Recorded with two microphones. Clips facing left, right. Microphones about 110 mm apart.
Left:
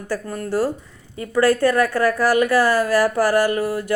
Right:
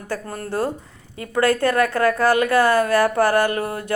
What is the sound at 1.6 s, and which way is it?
Speech, 20° right (ahead or behind).